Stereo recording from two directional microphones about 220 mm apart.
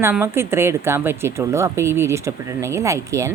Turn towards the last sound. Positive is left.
turn(degrees=-15)  # may be behind; listen again after turning